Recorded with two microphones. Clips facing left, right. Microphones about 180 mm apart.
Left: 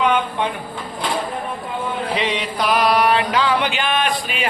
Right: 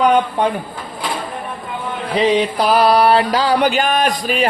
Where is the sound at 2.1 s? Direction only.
35° right (ahead or behind).